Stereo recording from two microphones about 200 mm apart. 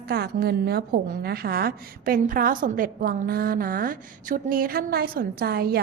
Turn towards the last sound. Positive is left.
turn(degrees=-50)  # may be behind; listen again after turning